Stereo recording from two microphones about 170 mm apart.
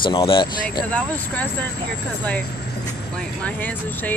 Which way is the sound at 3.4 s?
10° left (ahead or behind).